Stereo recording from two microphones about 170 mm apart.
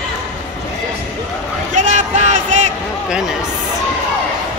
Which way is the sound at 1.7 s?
45° right (ahead or behind).